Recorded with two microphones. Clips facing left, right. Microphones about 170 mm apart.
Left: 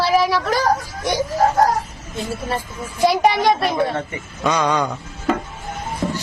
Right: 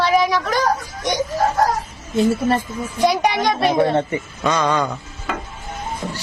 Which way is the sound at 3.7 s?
30° right (ahead or behind).